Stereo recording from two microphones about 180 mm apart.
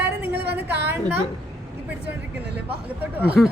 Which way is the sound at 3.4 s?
Centre (ahead or behind).